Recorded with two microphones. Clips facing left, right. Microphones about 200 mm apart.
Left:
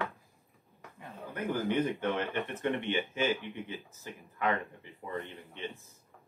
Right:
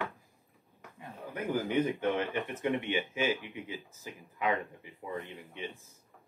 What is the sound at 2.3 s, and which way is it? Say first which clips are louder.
Speech: right 1 dB; 10° right (ahead or behind).